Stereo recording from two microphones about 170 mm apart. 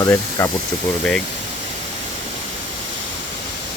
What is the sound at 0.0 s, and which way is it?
Speech, 20° left (ahead or behind).